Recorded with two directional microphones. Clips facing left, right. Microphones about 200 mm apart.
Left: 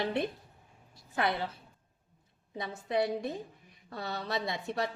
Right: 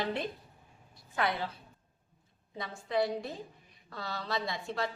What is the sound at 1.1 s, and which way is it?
Speech, 25° left (ahead or behind).